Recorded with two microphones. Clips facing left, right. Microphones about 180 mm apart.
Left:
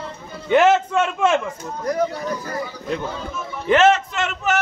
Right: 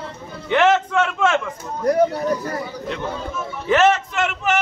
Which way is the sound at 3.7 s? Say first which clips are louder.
Left 1 dB; 10° right (ahead or behind).